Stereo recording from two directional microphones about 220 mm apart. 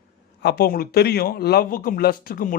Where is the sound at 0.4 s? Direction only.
45° left (ahead or behind).